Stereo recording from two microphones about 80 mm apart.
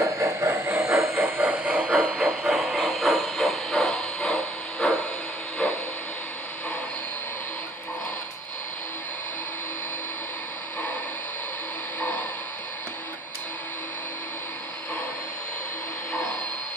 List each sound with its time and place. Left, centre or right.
0.0 s vehicle: right; by 2.3 s centre
2.4 s steam: centre
12.0 s a sound: left